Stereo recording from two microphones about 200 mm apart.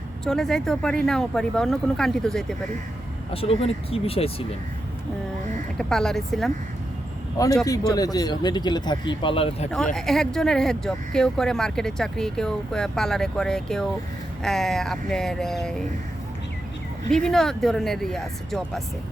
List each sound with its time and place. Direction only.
0.3 s speech: centre (ahead or behind)
3.3 s speech: 30° left (ahead or behind)
5.7 s speech: 5° left (ahead or behind)
7.4 s speech: 20° left (ahead or behind)
9.7 s speech: 5° left (ahead or behind)
17.1 s speech: centre (ahead or behind)